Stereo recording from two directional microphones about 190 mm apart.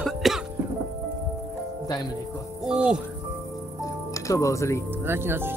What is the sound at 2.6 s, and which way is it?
Speech, 5° right (ahead or behind).